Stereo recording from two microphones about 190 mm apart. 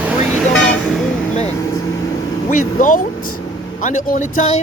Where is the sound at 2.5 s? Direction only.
45° left (ahead or behind).